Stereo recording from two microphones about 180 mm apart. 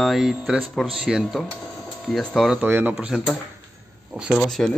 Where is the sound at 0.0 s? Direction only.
Centre (ahead or behind).